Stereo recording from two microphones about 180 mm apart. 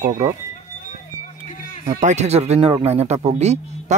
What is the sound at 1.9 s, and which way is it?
A man's voice, 40° right (ahead or behind).